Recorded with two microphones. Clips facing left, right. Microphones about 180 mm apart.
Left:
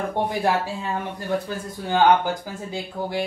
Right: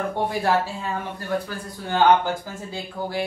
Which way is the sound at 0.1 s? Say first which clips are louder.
Left 1 dB; 20° left (ahead or behind).